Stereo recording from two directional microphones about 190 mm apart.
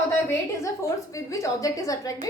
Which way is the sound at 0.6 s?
15° left (ahead or behind).